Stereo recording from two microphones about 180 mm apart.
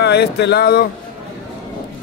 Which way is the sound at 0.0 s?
65° left (ahead or behind).